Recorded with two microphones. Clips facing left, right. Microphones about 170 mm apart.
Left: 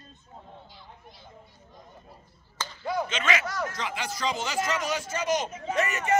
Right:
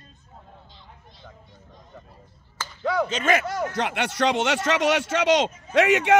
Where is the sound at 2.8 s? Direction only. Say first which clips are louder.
Right 6 dB; 70° right (ahead or behind).